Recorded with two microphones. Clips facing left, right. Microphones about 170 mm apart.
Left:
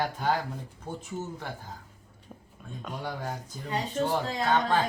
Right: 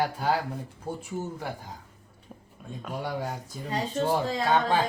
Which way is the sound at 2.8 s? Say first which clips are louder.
Right 4 dB; 10° right (ahead or behind).